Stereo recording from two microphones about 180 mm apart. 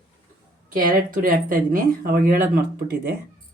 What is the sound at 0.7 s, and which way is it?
Speech, 50° right (ahead or behind).